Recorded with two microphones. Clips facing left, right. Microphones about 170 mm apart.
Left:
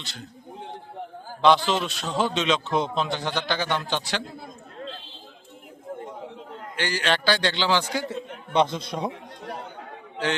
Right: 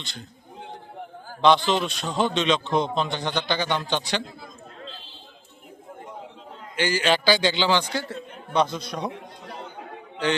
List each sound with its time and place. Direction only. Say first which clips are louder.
0.0 s a man's voice: even; 5° left (ahead or behind)
1.4 s a man's voice: right 1 dB; 5° left (ahead or behind)
6.7 s a man's voice: right 3 dB; 5° right (ahead or behind)
7.9 s a man's voice: left 1 dB; 15° left (ahead or behind)